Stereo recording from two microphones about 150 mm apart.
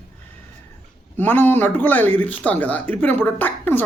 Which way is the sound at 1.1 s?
15° left (ahead or behind).